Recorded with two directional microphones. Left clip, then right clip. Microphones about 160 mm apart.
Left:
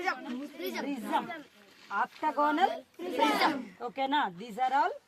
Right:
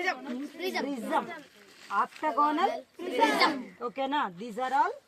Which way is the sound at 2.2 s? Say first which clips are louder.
Even; 25° left (ahead or behind).